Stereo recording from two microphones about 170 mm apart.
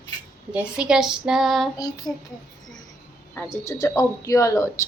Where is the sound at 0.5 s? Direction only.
5° right (ahead or behind).